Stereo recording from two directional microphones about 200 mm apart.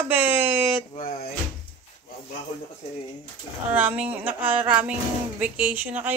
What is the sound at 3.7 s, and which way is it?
A woman's voice, 10° right (ahead or behind).